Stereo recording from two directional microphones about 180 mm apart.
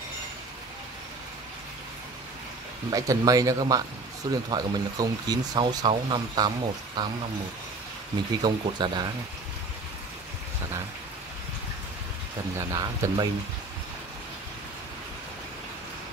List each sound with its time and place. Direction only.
2.9 s speech: 20° right (ahead or behind)
8.4 s speech: 25° right (ahead or behind)
12.5 s speech: 20° right (ahead or behind)